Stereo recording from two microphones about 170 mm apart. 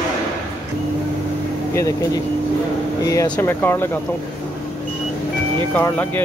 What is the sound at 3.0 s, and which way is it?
Speech, 20° left (ahead or behind).